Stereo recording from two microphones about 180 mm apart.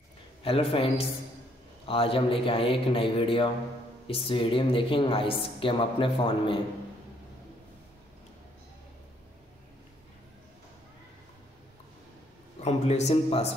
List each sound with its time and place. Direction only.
0.4 s a man's voice: 30° left (ahead or behind)
12.5 s a man's voice: 35° left (ahead or behind)